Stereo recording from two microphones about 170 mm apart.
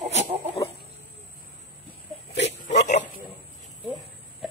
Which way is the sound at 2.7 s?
45° left (ahead or behind).